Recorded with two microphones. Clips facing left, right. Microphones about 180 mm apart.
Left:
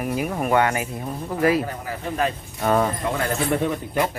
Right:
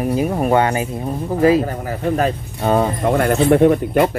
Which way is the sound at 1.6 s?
45° right (ahead or behind).